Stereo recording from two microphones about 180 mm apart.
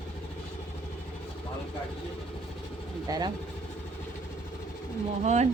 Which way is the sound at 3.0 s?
20° right (ahead or behind).